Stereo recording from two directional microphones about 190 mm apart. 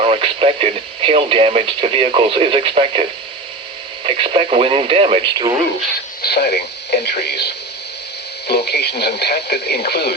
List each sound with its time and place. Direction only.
0.0 s speech: 35° right (ahead or behind)
6.2 s speech: 60° left (ahead or behind)